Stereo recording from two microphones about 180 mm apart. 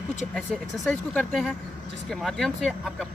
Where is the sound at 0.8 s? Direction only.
Centre (ahead or behind).